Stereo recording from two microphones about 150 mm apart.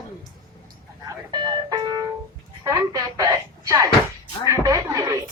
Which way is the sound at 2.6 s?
25° right (ahead or behind).